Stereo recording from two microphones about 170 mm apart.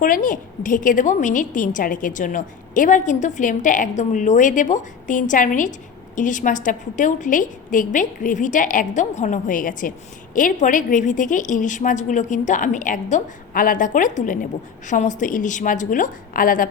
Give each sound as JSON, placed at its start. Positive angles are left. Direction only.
{"t": 0.0, "sound": "a woman's voice", "side_deg": 55}